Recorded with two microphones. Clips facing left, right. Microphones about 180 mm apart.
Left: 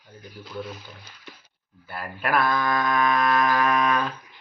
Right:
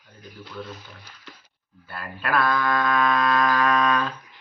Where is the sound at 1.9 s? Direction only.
20° left (ahead or behind).